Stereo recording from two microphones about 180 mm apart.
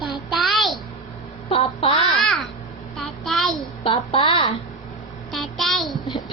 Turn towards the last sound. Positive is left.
turn(degrees=0)  # may be behind; listen again after turning